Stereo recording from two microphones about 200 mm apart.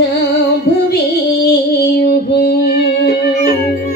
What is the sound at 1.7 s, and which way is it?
Music, 50° left (ahead or behind).